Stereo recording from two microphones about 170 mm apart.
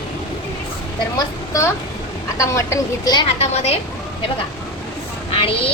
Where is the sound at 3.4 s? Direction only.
40° left (ahead or behind).